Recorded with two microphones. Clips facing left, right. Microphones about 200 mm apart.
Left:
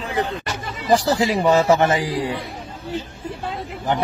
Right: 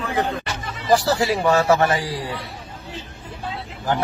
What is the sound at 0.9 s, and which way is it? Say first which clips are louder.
Speech: left 1 dB; 15° left (ahead or behind).